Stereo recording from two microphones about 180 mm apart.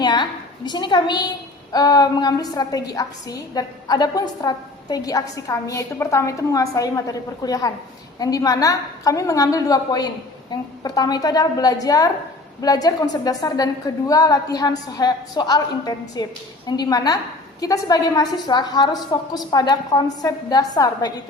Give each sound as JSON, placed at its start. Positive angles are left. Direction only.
{"t": 0.0, "sound": "a woman's voice", "side_deg": 25}